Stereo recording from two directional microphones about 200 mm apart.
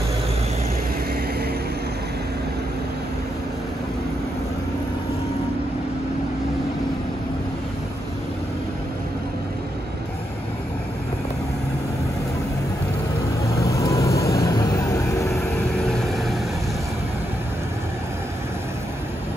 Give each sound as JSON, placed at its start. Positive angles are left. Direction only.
{"t": 13.6, "sound": "vehicle", "side_deg": 15}
{"t": 15.3, "sound": "vehicle", "side_deg": 0}